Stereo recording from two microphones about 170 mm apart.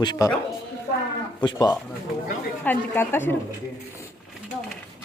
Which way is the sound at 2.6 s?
10° left (ahead or behind).